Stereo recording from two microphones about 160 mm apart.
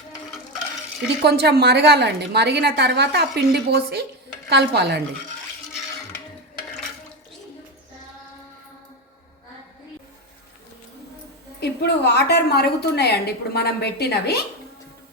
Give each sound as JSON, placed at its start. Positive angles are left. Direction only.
{"t": 1.2, "sound": "a woman's voice", "side_deg": -85}
{"t": 4.4, "sound": "a woman's voice", "side_deg": -90}
{"t": 11.6, "sound": "a woman's voice", "side_deg": 90}